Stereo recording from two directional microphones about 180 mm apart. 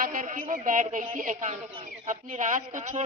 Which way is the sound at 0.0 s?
45° right (ahead or behind).